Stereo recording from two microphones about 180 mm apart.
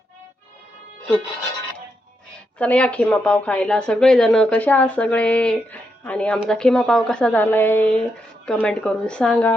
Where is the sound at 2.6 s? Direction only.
5° left (ahead or behind).